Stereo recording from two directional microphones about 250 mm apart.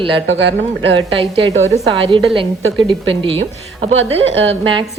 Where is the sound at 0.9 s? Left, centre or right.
Right.